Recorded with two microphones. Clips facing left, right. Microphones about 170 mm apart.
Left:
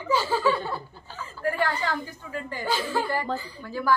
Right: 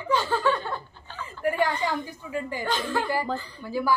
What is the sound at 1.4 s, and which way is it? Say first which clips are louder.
Speech: right 2 dB; 15° right (ahead or behind).